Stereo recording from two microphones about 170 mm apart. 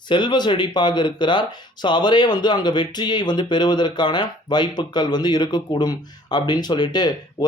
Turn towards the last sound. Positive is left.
turn(degrees=25)  # may be behind; listen again after turning